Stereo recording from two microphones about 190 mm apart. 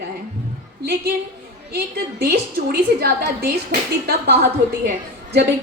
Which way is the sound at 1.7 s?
55° right (ahead or behind).